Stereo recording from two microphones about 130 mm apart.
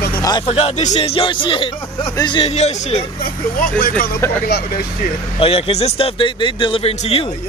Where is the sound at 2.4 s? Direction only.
55° left (ahead or behind).